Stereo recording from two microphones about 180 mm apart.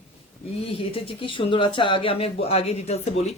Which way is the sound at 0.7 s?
30° left (ahead or behind).